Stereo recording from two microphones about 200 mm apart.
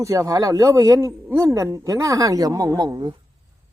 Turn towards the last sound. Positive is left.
turn(degrees=-20)  # may be behind; listen again after turning